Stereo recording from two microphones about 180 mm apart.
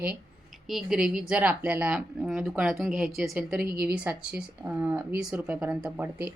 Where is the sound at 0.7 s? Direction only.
5° right (ahead or behind).